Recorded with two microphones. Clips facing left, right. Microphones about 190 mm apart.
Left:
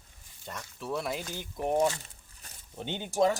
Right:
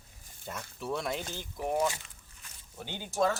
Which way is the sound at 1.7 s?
35° left (ahead or behind).